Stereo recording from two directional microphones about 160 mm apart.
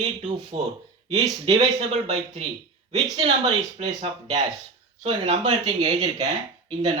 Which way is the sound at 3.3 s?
35° right (ahead or behind).